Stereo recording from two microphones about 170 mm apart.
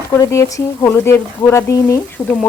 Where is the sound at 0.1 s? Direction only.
15° left (ahead or behind).